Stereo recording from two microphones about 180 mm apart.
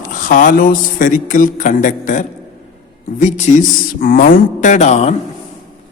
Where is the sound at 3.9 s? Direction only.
50° left (ahead or behind).